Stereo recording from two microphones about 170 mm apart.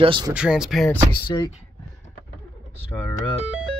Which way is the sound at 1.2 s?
25° left (ahead or behind).